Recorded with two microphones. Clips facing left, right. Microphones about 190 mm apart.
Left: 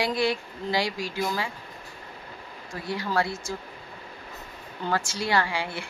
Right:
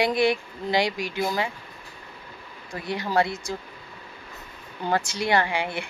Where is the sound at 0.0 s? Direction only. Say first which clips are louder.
Right 4 dB; 20° right (ahead or behind).